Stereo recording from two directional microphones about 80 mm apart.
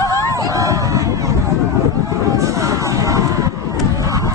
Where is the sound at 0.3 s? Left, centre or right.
Right.